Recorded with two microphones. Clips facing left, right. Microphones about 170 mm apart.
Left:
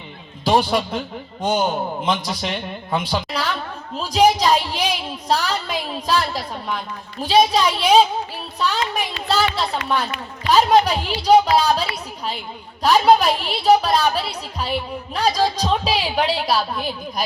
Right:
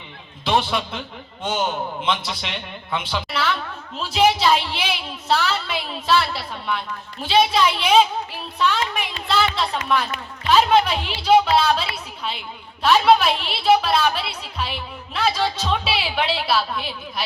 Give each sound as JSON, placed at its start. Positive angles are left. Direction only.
{"t": 0.4, "sound": "a man's voice", "side_deg": 40}